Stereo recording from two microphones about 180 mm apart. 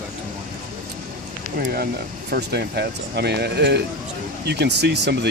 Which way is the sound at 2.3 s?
65° right (ahead or behind).